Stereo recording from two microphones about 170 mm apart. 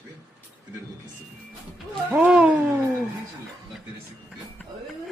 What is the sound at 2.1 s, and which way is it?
Speech, 10° right (ahead or behind).